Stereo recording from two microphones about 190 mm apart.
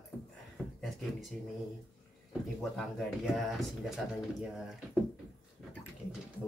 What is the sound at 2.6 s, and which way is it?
Speech, centre (ahead or behind).